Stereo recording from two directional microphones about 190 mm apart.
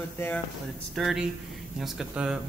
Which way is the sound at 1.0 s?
Centre (ahead or behind).